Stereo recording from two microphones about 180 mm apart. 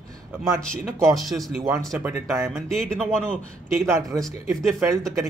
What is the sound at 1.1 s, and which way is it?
Speech, centre (ahead or behind).